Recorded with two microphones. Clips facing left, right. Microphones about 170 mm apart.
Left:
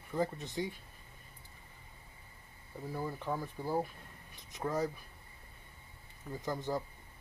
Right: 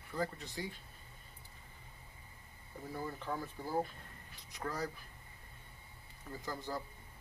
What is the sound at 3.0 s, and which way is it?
Speech, 15° left (ahead or behind).